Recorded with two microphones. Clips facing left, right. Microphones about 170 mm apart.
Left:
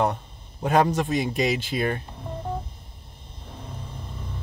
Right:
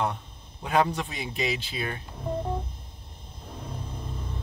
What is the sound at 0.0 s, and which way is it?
A man's voice, 45° left (ahead or behind).